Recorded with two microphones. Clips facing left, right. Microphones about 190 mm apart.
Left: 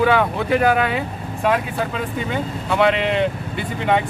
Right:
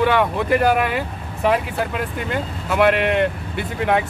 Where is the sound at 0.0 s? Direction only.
Centre (ahead or behind).